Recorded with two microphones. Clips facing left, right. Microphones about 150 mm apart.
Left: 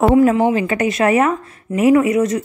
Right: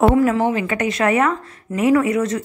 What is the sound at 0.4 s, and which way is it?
Speech, 15° left (ahead or behind).